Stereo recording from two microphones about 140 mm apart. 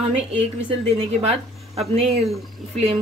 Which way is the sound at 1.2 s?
50° right (ahead or behind).